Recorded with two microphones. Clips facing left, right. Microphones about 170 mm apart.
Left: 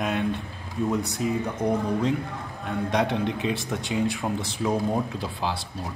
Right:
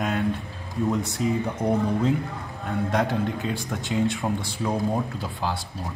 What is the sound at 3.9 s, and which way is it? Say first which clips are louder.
Speech: right 2 dB; centre (ahead or behind).